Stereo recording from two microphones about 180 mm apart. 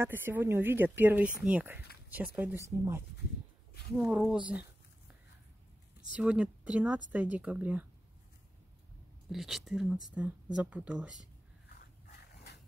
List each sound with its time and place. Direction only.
0.0 s speech: 10° right (ahead or behind)
3.9 s speech: 5° right (ahead or behind)
6.1 s speech: 5° right (ahead or behind)
9.3 s speech: centre (ahead or behind)
12.1 s dog: 60° left (ahead or behind)